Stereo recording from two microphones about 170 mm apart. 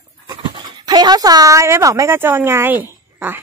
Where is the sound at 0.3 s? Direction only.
25° right (ahead or behind).